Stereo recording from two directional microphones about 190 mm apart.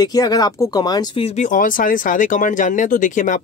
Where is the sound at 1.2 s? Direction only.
40° left (ahead or behind).